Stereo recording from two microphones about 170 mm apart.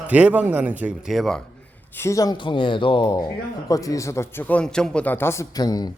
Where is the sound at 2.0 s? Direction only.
20° left (ahead or behind).